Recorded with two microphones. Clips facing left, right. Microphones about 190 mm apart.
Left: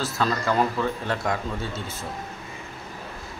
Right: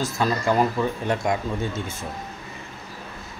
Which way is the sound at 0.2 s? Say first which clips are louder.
Right 2 dB; 15° right (ahead or behind).